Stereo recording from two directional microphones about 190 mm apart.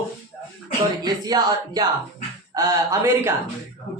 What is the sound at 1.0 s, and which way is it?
A man's voice, 20° right (ahead or behind).